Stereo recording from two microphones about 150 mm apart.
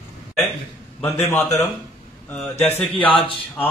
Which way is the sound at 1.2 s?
20° left (ahead or behind).